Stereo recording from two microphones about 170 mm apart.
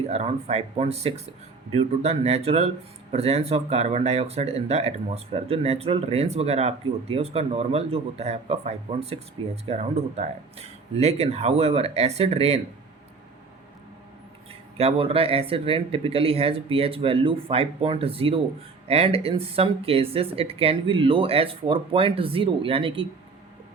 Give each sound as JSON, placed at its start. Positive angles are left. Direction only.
{"t": 0.1, "sound": "speech", "side_deg": -40}
{"t": 14.8, "sound": "speech", "side_deg": -35}